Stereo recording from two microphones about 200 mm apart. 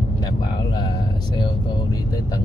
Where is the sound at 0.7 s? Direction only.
20° left (ahead or behind).